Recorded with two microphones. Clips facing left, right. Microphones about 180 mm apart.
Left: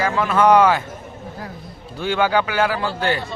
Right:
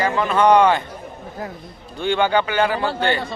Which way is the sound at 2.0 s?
5° left (ahead or behind).